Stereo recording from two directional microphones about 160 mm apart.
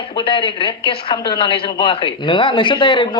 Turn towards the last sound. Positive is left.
turn(degrees=30)  # may be behind; listen again after turning